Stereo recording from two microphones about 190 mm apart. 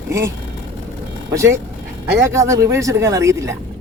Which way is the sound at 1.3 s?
15° right (ahead or behind).